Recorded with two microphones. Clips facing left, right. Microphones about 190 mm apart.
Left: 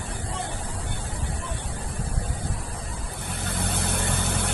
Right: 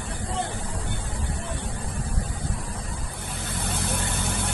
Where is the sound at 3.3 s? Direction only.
60° left (ahead or behind).